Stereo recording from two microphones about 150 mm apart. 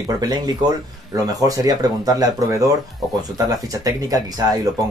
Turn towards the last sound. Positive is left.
turn(degrees=-25)  # may be behind; listen again after turning